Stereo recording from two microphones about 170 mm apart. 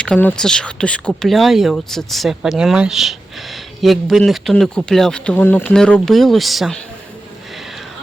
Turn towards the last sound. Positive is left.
turn(degrees=0)  # may be behind; listen again after turning